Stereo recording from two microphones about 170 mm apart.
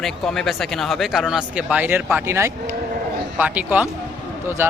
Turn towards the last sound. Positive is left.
turn(degrees=-15)  # may be behind; listen again after turning